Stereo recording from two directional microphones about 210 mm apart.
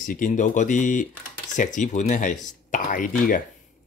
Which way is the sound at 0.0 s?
40° left (ahead or behind).